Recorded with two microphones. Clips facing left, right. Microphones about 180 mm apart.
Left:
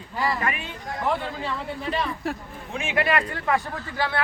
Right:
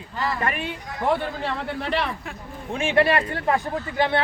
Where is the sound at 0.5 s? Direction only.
60° right (ahead or behind).